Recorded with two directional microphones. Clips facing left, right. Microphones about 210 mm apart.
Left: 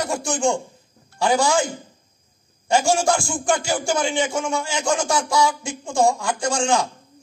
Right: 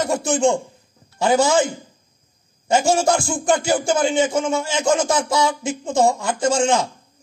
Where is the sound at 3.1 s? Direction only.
20° right (ahead or behind).